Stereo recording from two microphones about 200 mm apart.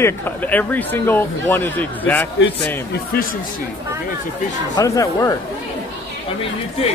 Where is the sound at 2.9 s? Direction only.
50° left (ahead or behind).